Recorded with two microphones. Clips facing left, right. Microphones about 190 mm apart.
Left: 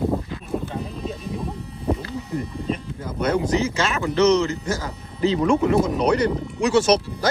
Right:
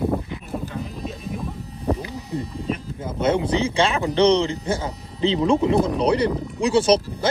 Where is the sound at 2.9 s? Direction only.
25° right (ahead or behind).